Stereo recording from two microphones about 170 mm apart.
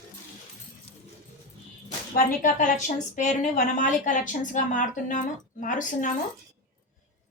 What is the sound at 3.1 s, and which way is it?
A woman's voice, 45° left (ahead or behind).